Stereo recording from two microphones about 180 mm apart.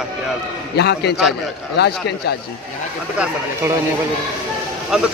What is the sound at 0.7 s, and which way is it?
Speech, 65° left (ahead or behind).